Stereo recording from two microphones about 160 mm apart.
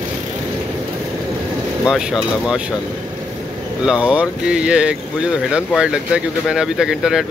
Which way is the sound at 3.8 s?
5° right (ahead or behind).